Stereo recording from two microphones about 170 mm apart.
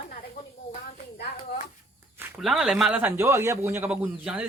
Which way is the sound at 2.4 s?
Centre (ahead or behind).